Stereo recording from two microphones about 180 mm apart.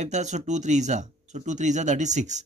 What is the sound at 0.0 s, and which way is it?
Speech, 40° right (ahead or behind).